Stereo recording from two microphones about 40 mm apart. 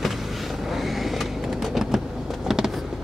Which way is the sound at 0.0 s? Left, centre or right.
Centre.